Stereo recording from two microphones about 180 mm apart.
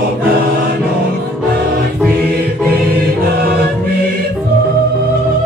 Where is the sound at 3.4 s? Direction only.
55° right (ahead or behind).